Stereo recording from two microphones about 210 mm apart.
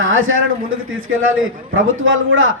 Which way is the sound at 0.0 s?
70° right (ahead or behind).